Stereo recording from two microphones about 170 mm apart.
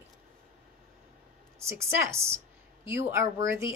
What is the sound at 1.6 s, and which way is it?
A woman's voice, 15° right (ahead or behind).